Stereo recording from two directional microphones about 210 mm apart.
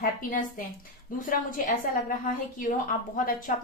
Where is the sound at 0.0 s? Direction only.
40° left (ahead or behind).